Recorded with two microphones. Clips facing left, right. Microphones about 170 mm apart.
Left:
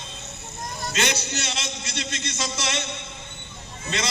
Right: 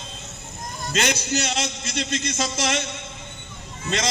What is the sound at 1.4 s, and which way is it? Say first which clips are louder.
A man's voice: right 5 dB; 50° right (ahead or behind).